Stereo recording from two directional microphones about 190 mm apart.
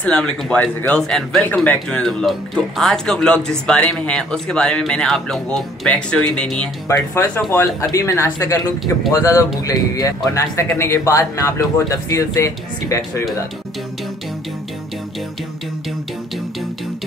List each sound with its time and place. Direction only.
0.0 s speech: 5° left (ahead or behind)